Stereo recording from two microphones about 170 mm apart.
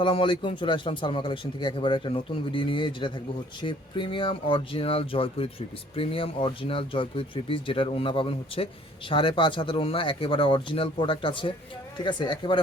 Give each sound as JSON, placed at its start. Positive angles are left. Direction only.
{"t": 0.0, "sound": "a man's voice", "side_deg": 30}